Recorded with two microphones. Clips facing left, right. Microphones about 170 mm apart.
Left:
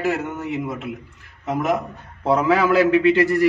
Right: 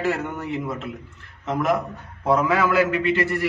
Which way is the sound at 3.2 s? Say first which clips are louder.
Left 6 dB; 40° left (ahead or behind).